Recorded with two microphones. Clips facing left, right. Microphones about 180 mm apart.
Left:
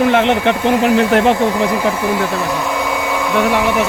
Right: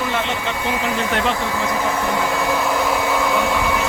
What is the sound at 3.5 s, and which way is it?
Speech, 65° left (ahead or behind).